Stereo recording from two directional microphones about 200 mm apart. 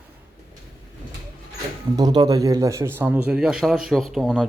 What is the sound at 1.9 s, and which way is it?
Speech, 20° right (ahead or behind).